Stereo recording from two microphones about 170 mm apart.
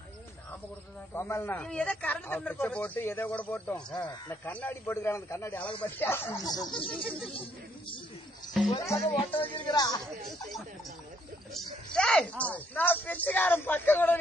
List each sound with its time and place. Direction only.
1.1 s speech: 15° left (ahead or behind)
8.8 s speech: 20° left (ahead or behind)
11.5 s speech: 5° left (ahead or behind)